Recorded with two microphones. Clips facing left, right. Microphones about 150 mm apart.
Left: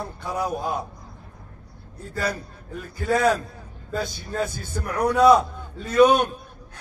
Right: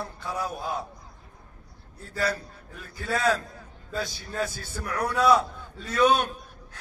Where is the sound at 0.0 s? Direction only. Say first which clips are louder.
Left 4 dB; 15° left (ahead or behind).